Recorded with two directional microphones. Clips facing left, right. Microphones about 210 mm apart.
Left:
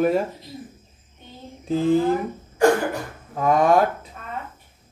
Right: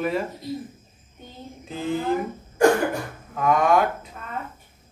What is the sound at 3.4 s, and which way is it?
Speech, 30° left (ahead or behind).